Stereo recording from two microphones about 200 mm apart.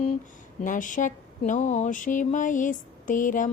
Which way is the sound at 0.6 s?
40° left (ahead or behind).